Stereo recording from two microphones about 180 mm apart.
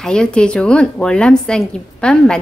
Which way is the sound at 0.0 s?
5° left (ahead or behind).